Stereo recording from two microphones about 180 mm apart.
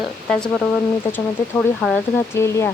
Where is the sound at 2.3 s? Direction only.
15° left (ahead or behind).